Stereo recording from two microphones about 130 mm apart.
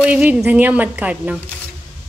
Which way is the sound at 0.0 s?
10° right (ahead or behind).